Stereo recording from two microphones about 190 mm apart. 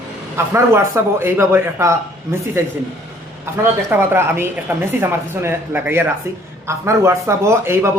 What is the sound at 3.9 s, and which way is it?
Speech, 10° right (ahead or behind).